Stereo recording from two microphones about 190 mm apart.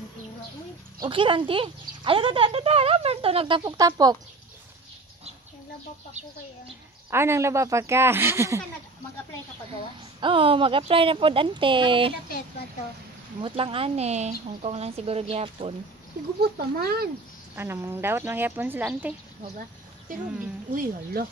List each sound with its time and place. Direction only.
1.0 s speech: 25° right (ahead or behind)
7.1 s speech: 15° right (ahead or behind)
10.2 s speech: 30° right (ahead or behind)
13.4 s speech: 30° right (ahead or behind)
16.3 s speech: 55° right (ahead or behind)
17.6 s speech: 15° right (ahead or behind)
20.7 s speech: 50° right (ahead or behind)